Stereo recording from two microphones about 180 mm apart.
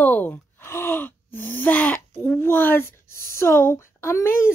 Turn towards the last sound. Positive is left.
turn(degrees=15)  # may be behind; listen again after turning